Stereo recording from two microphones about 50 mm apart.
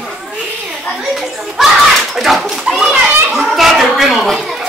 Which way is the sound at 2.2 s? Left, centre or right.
Centre.